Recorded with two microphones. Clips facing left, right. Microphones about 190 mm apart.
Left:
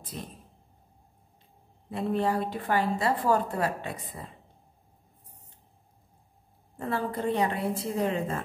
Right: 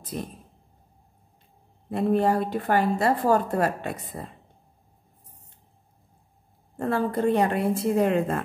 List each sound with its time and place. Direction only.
0.1 s a woman's voice: 60° right (ahead or behind)
1.9 s a woman's voice: 50° right (ahead or behind)
6.8 s a woman's voice: 50° right (ahead or behind)